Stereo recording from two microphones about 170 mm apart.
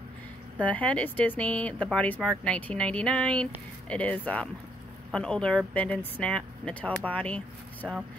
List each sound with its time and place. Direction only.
0.6 s speech: 10° left (ahead or behind)